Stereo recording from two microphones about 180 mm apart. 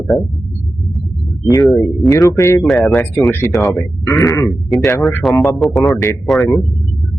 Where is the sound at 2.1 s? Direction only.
15° left (ahead or behind).